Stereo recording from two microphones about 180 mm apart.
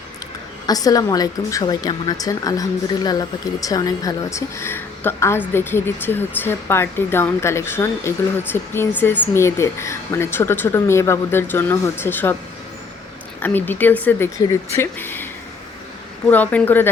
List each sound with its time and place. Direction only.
0.7 s a woman's voice: 20° left (ahead or behind)
13.4 s speech: 10° left (ahead or behind)
16.3 s speech: 10° left (ahead or behind)